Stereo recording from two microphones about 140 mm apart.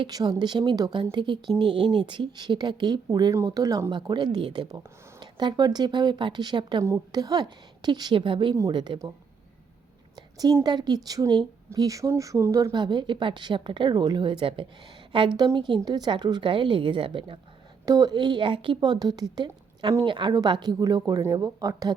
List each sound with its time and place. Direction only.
0.0 s speech: 30° right (ahead or behind)
10.2 s a woman's voice: 30° right (ahead or behind)
17.8 s a woman's voice: 25° right (ahead or behind)